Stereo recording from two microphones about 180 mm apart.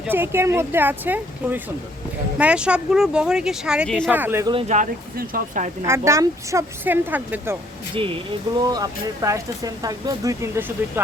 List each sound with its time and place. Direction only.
0.0 s speech: 10° right (ahead or behind)
4.1 s speech: 10° right (ahead or behind)
4.7 s speech: 50° right (ahead or behind)
5.8 s speech: 15° right (ahead or behind)
7.9 s speech: 30° right (ahead or behind); by 11.0 s 15° right (ahead or behind)